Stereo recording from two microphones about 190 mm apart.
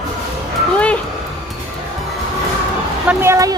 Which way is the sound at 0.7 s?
5° left (ahead or behind).